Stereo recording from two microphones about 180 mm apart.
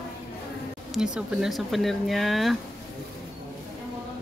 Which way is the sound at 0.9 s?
5° right (ahead or behind).